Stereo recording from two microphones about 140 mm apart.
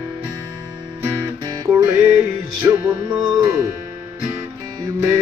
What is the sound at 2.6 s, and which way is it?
Music, 25° right (ahead or behind).